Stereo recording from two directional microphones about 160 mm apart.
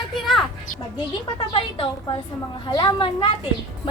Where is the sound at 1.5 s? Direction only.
35° left (ahead or behind).